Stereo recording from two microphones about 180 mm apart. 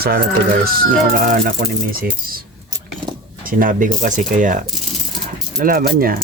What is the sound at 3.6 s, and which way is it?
Speech, 50° right (ahead or behind).